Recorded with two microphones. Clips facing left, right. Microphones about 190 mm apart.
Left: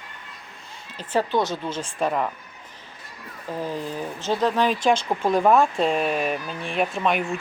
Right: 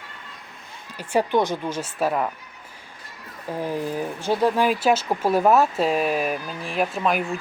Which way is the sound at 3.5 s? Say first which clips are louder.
Right 2 dB; 15° right (ahead or behind).